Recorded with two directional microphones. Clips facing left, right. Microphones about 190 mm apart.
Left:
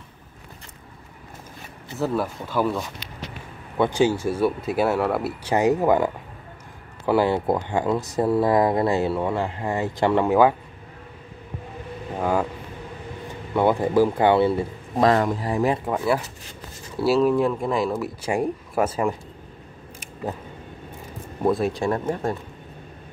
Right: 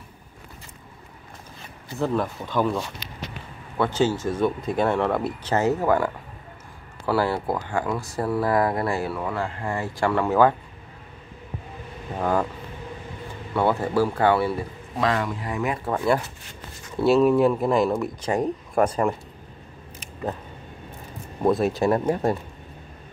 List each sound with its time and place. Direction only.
2.0 s speech: 5° left (ahead or behind)
12.2 s speech: 10° left (ahead or behind)
13.5 s speech: 15° left (ahead or behind)
15.0 s speech: 40° left (ahead or behind)
15.8 s speech: 5° left (ahead or behind)
21.5 s speech: centre (ahead or behind)